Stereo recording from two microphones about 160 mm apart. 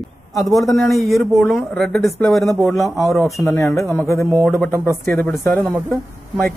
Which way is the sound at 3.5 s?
20° left (ahead or behind).